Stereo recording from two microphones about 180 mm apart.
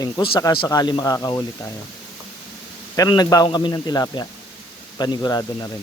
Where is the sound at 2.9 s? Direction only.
20° left (ahead or behind).